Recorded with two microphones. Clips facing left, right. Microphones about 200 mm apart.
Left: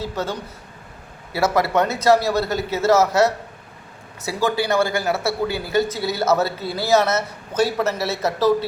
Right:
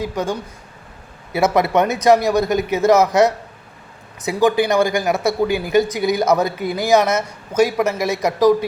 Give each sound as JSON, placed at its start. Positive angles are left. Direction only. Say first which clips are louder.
{"t": 0.0, "sound": "speech", "louder": "right 4 dB", "side_deg": -15}